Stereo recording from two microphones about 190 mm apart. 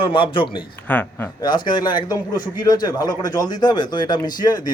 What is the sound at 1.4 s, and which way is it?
A man's voice, 25° left (ahead or behind).